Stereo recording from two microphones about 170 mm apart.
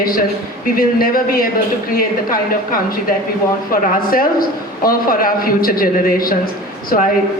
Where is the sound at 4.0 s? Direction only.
55° left (ahead or behind).